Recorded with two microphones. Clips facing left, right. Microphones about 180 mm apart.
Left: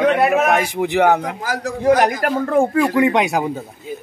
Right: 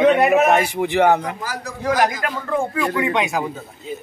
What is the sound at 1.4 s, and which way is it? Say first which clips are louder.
Speech: left 6 dB; 90° left.